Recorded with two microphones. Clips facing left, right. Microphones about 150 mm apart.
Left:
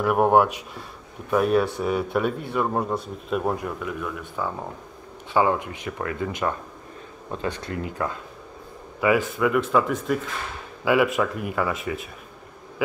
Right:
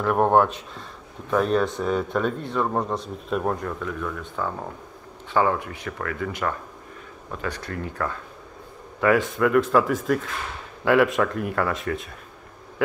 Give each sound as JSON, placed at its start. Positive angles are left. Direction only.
{"t": 0.0, "sound": "speech", "side_deg": 10}
{"t": 9.0, "sound": "speech", "side_deg": 5}